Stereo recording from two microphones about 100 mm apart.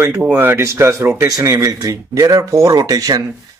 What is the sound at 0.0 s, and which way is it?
Speech, 15° right (ahead or behind).